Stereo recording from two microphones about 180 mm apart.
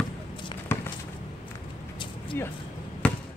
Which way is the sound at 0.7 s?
15° left (ahead or behind).